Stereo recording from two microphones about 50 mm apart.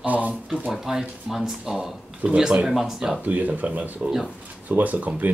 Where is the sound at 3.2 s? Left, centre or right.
Right.